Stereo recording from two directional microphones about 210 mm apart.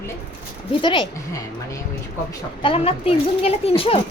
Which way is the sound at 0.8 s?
25° left (ahead or behind).